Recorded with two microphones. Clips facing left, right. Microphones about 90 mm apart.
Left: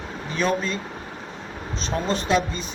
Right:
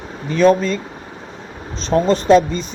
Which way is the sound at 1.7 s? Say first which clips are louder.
Right 10 dB; 35° right (ahead or behind).